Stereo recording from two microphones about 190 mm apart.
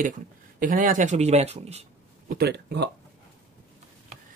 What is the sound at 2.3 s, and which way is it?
Speech, 60° right (ahead or behind).